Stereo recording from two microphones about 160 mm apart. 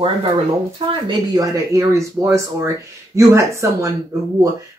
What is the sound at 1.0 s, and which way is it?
Speech, 25° right (ahead or behind).